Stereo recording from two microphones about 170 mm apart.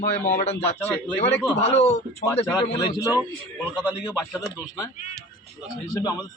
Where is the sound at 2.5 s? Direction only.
20° left (ahead or behind).